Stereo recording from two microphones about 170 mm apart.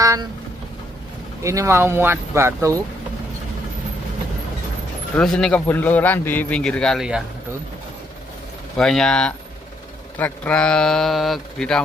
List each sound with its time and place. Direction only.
0.0 s vehicle: 20° right (ahead or behind)
1.4 s speech: 15° right (ahead or behind)
5.1 s a man's voice: 5° left (ahead or behind)
8.7 s speech: 5° left (ahead or behind)